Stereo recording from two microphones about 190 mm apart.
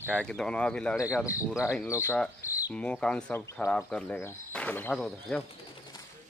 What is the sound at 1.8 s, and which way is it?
Speech, 15° left (ahead or behind).